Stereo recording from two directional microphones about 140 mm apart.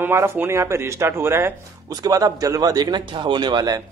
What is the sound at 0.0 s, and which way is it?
Speech, 15° right (ahead or behind).